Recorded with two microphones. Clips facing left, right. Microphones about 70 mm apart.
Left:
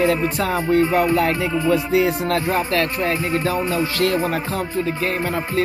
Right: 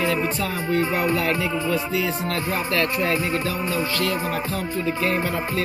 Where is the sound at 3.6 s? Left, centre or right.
Left.